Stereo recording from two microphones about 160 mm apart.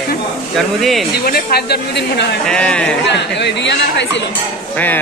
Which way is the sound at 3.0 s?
90° left.